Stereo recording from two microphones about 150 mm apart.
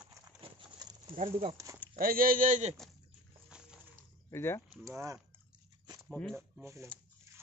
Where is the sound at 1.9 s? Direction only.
75° right (ahead or behind); by 2.7 s 60° right (ahead or behind).